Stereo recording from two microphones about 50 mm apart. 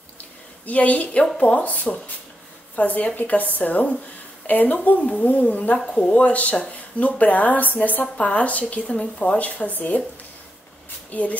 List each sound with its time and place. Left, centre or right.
0.7 s a woman's voice: left
9.4 s speech: left
11.1 s speech: left